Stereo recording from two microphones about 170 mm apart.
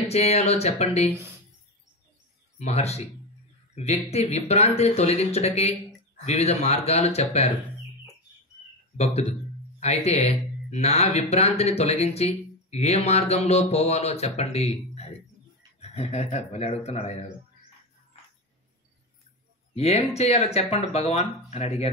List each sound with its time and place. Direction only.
0.1 s speech: 40° left (ahead or behind)
2.6 s speech: 40° left (ahead or behind)
8.9 s speech: 40° left (ahead or behind)
18.1 s a sound: 35° left (ahead or behind)
19.7 s speech: 40° left (ahead or behind)